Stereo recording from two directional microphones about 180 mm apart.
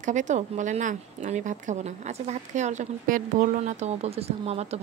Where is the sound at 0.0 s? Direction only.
40° right (ahead or behind).